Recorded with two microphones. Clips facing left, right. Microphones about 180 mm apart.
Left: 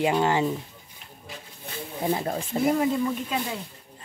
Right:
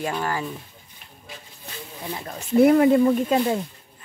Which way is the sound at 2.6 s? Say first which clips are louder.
Right 7 dB; 65° right (ahead or behind).